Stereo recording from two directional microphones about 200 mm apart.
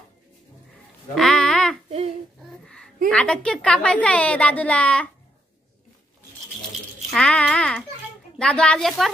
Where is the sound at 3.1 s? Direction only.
5° left (ahead or behind).